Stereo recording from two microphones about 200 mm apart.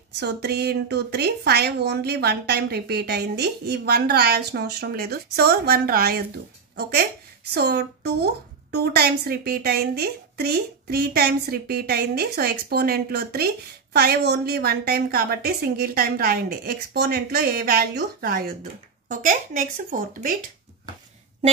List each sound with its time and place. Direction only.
0.2 s a woman's voice: 55° right (ahead or behind)